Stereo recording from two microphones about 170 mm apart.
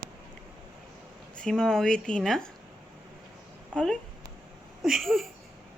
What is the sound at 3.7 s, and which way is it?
Speech, 5° left (ahead or behind).